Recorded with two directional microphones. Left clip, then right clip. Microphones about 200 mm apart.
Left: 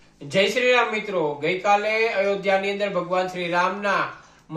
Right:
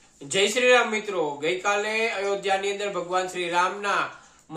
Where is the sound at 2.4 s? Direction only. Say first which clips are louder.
Left 3 dB; 20° right (ahead or behind).